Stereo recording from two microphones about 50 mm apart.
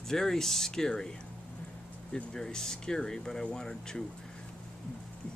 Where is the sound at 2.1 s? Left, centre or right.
Centre.